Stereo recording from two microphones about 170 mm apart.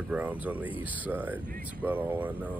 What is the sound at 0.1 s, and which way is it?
Speech, 10° right (ahead or behind).